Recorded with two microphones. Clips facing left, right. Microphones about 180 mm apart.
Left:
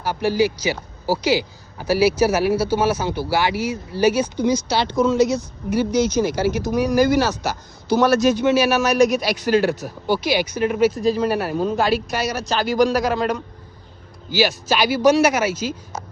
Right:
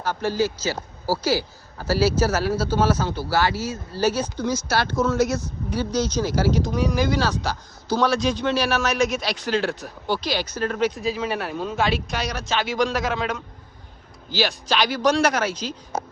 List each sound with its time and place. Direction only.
0.0 s a man's voice: 10° left (ahead or behind)